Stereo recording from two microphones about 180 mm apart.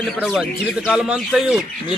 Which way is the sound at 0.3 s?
5° right (ahead or behind).